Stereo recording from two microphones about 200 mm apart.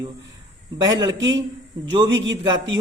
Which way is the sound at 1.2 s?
70° right (ahead or behind).